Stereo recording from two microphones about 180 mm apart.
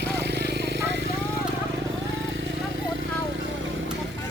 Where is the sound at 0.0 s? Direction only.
70° right (ahead or behind).